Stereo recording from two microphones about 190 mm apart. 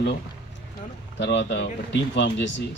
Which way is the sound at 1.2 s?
65° left (ahead or behind).